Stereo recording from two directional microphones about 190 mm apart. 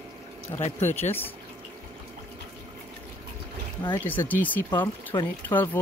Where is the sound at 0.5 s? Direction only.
25° left (ahead or behind).